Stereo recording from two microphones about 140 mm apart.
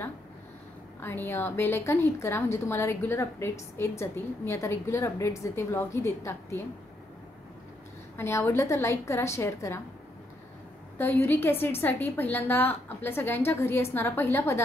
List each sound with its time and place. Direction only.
1.0 s a woman's voice: 15° left (ahead or behind)
8.2 s a woman's voice: 20° left (ahead or behind)
11.0 s a woman's voice: 15° left (ahead or behind)